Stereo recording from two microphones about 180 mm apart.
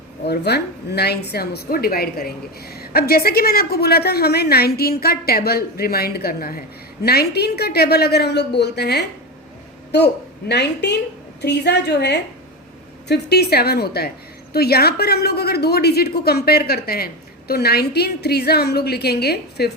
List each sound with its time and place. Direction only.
0.3 s a woman's voice: 65° left (ahead or behind)